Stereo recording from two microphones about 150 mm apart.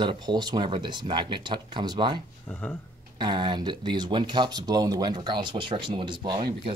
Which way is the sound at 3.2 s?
30° right (ahead or behind).